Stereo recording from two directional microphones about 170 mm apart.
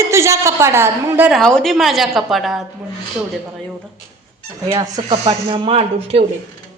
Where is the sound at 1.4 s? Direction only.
5° left (ahead or behind).